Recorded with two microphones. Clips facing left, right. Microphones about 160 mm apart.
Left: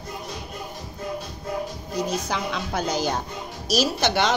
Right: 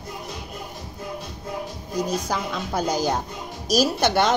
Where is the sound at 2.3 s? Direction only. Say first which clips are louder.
Right 1 dB; 45° right (ahead or behind).